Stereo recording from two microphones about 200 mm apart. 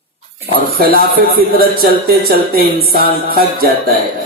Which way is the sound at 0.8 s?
50° right (ahead or behind).